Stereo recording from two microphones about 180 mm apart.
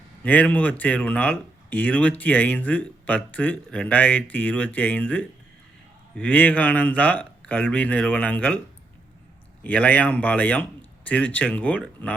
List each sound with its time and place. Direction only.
0.2 s speech: 10° left (ahead or behind)
9.6 s speech: 10° left (ahead or behind)